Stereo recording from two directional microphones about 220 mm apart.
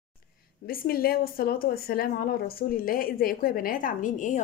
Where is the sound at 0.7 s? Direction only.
45° left (ahead or behind).